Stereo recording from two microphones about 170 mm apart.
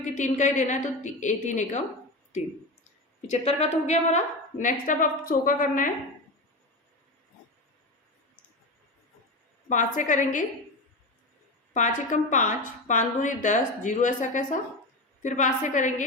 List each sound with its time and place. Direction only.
0.0 s a woman's voice: 45° left (ahead or behind)
3.2 s a woman's voice: 40° left (ahead or behind)
9.6 s a woman's voice: 50° left (ahead or behind)
11.7 s a woman's voice: 45° left (ahead or behind)